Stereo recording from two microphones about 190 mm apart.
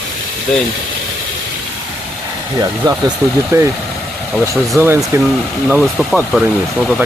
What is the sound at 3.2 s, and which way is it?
Speech, 15° right (ahead or behind).